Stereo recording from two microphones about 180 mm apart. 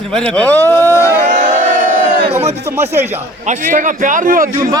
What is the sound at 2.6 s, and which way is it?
Speech, 15° right (ahead or behind).